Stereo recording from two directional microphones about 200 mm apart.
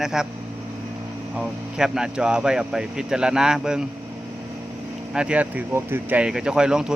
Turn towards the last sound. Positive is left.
turn(degrees=-5)  # may be behind; listen again after turning